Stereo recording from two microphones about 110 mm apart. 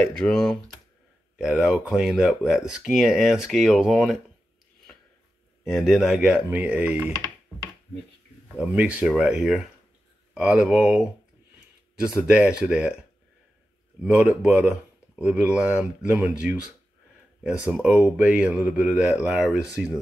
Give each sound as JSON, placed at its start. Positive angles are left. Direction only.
{"t": 0.0, "sound": "speech", "side_deg": 5}
{"t": 1.4, "sound": "speech", "side_deg": -10}
{"t": 5.6, "sound": "speech", "side_deg": 0}
{"t": 8.5, "sound": "speech", "side_deg": -10}
{"t": 14.0, "sound": "speech", "side_deg": -5}
{"t": 17.6, "sound": "speech", "side_deg": -10}